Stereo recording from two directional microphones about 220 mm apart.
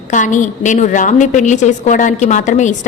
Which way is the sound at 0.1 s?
35° left (ahead or behind).